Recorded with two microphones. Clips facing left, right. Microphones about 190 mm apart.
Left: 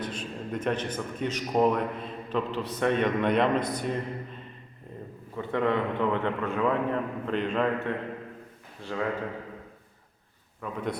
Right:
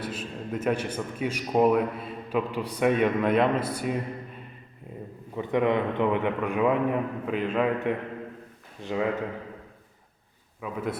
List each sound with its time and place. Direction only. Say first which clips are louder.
0.0 s a man's voice: right 1 dB; 5° right (ahead or behind)
5.4 s a man's voice: right 2 dB; 15° right (ahead or behind)
8.8 s a man's voice: right 3 dB; 20° right (ahead or behind)
10.6 s a man's voice: right 1 dB; 5° right (ahead or behind)